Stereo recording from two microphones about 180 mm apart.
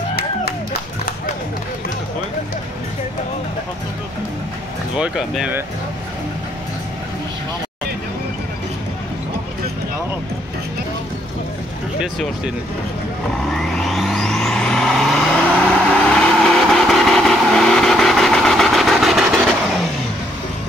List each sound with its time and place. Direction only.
4.9 s speech: 5° right (ahead or behind)
13.4 s vehicle: centre (ahead or behind)